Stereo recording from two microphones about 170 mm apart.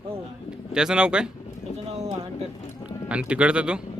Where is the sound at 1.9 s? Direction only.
40° right (ahead or behind).